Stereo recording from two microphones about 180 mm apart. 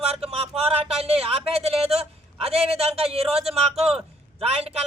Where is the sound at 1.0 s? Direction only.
35° right (ahead or behind).